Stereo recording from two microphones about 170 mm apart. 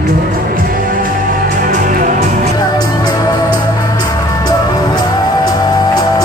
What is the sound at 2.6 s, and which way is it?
Music, 25° left (ahead or behind).